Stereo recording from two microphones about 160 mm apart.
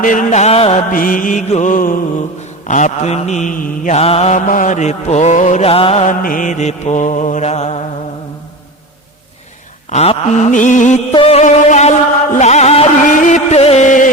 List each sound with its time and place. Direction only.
0.0 s mantra: 55° left (ahead or behind)
0.9 s mantra: 60° left (ahead or behind)
3.9 s mantra: 40° left (ahead or behind)
9.9 s mantra: 45° left (ahead or behind)
11.1 s mantra: 35° left (ahead or behind)